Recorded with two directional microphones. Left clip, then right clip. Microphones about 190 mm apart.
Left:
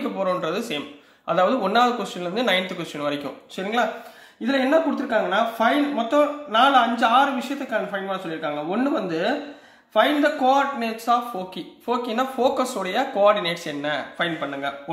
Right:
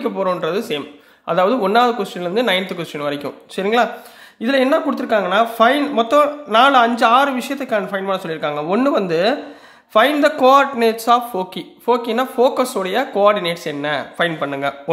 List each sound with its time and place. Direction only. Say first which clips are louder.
0.0 s a man's voice: right 5 dB; 25° right (ahead or behind)
4.4 s speech: right 4 dB; 50° right (ahead or behind)